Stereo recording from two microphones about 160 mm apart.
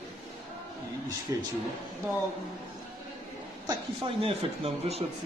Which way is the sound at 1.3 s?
20° right (ahead or behind).